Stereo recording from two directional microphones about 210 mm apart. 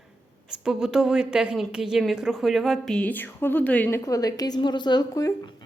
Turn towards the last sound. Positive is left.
turn(degrees=20)  # may be behind; listen again after turning